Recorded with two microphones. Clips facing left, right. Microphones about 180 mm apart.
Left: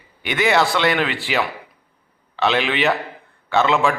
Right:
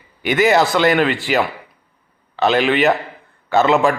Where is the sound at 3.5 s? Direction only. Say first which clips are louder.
Right 3 dB; 40° right (ahead or behind).